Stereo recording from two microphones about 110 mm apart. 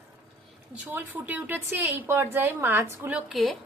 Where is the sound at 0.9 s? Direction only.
20° right (ahead or behind).